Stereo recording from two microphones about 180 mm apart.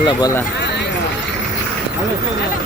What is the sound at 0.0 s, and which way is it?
Speech, 25° left (ahead or behind).